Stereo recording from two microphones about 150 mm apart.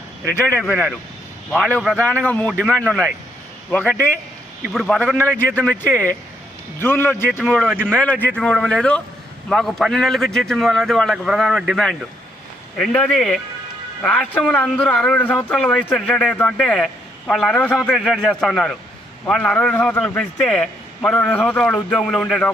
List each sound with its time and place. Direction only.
0.3 s a man's voice: 15° left (ahead or behind)
0.6 s a man's voice: centre (ahead or behind)
4.7 s a man's voice: centre (ahead or behind)
5.5 s a man's voice: 10° left (ahead or behind)
7.4 s a man's voice: centre (ahead or behind)
7.9 s a man's voice: 10° left (ahead or behind)